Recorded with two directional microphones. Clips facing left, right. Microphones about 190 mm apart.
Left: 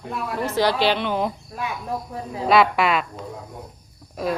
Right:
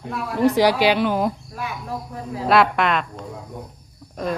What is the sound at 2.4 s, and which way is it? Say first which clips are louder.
Speech: even; centre (ahead or behind).